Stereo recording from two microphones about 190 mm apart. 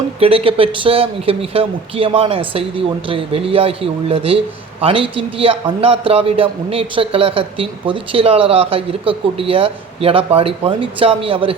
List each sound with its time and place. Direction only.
0.2 s a man's voice: 30° right (ahead or behind)